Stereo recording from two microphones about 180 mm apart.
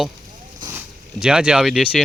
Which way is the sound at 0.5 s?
15° right (ahead or behind).